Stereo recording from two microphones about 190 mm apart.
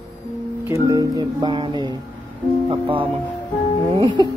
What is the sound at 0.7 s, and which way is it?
Music, 15° right (ahead or behind).